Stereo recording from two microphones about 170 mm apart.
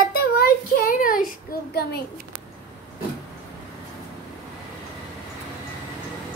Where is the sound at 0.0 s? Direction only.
60° left (ahead or behind).